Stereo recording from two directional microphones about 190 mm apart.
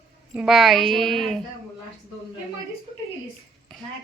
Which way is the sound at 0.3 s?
Centre (ahead or behind).